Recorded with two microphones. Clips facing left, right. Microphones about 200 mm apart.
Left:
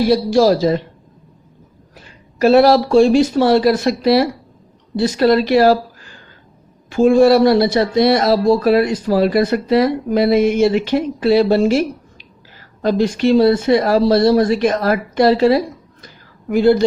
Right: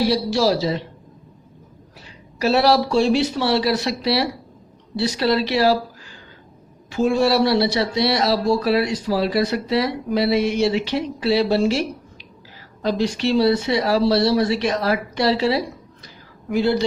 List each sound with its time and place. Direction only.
0.0 s speech: 50° left (ahead or behind)
2.0 s speech: 50° left (ahead or behind)
16.0 s a sound: 50° left (ahead or behind)